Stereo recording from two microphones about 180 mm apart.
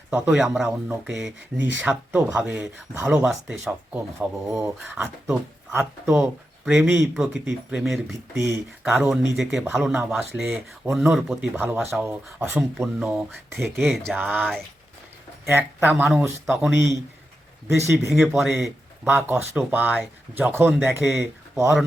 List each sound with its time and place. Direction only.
0.1 s speech: 5° right (ahead or behind)
4.5 s speech: 15° right (ahead or behind)
5.2 s speech: centre (ahead or behind)
8.4 s speech: 10° right (ahead or behind)
18.1 s speech: centre (ahead or behind)
20.7 s speech: centre (ahead or behind)